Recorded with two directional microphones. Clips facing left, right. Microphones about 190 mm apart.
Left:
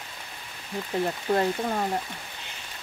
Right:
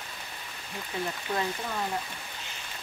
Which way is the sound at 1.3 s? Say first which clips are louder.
Left 8 dB; 45° left (ahead or behind).